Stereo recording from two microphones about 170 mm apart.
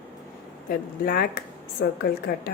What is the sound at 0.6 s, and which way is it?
A woman's voice, 60° left (ahead or behind).